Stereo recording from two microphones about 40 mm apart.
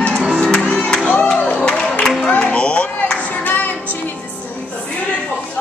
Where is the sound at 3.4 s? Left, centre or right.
Left.